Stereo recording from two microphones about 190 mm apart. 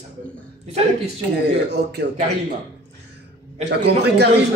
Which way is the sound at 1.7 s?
60° right (ahead or behind).